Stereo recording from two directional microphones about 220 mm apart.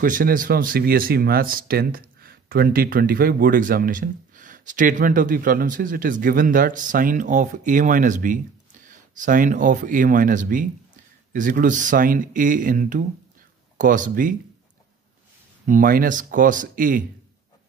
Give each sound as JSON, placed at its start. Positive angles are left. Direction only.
{"t": 0.0, "sound": "speech", "side_deg": -40}
{"t": 15.6, "sound": "speech", "side_deg": -40}